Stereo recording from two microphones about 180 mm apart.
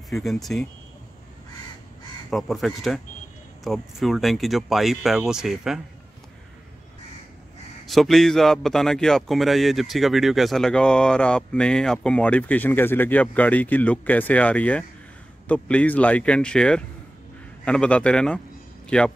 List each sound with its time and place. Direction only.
0.1 s a man's voice: centre (ahead or behind)
2.3 s a man's voice: centre (ahead or behind)
7.8 s a man's voice: centre (ahead or behind)